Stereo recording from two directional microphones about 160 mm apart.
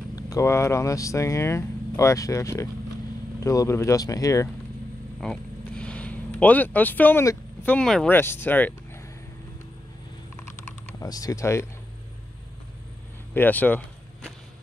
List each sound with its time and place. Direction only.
0.1 s speech: 20° left (ahead or behind)
5.2 s speech: 5° left (ahead or behind)
10.3 s typing: 15° left (ahead or behind)
13.3 s speech: 10° left (ahead or behind)